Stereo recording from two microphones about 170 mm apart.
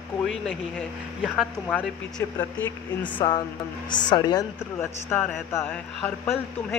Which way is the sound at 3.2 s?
25° left (ahead or behind).